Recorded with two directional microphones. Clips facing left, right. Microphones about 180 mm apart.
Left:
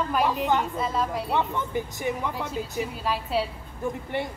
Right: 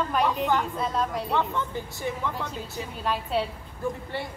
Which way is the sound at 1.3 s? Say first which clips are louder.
Left 2 dB; 15° left (ahead or behind).